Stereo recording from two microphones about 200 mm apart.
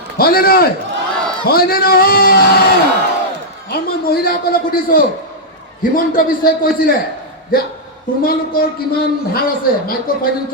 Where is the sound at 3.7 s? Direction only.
50° left (ahead or behind).